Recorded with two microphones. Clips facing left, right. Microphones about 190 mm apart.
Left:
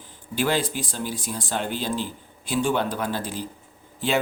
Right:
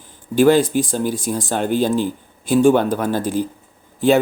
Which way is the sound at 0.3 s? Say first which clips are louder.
Right 11 dB; 45° right (ahead or behind).